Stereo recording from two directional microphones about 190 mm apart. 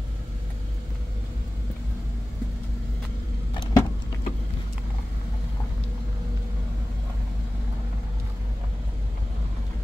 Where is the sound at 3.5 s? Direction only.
25° left (ahead or behind).